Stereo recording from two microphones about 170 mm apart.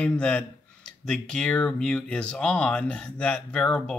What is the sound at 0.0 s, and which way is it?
Speech, 5° left (ahead or behind).